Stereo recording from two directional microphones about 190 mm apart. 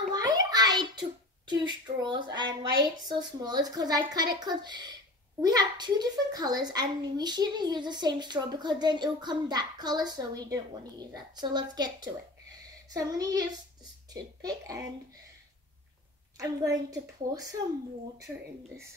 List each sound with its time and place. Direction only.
0.1 s a sound: 20° right (ahead or behind)
1.5 s a child's voice: 20° right (ahead or behind)
16.3 s a woman's voice: 15° right (ahead or behind)